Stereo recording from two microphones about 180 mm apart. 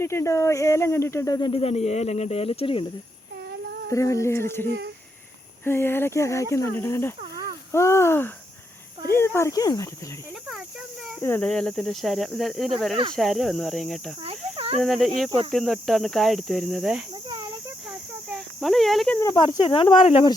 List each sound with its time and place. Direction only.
0.0 s speech: 15° left (ahead or behind); by 2.8 s 30° left (ahead or behind)
3.8 s speech: 15° left (ahead or behind)
7.2 s a sound: 20° right (ahead or behind)
7.7 s speech: 15° left (ahead or behind)
11.2 s speech: 10° left (ahead or behind)
14.2 s cricket: 30° right (ahead or behind)
14.8 s speech: centre (ahead or behind)
18.3 s speech: centre (ahead or behind)
19.2 s speech: 20° left (ahead or behind)